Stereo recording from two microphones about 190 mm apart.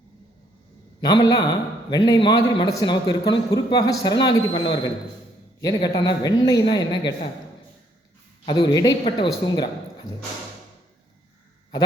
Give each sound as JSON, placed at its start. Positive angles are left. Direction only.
{"t": 1.0, "sound": "a man's voice", "side_deg": 20}
{"t": 8.4, "sound": "a man's voice", "side_deg": 20}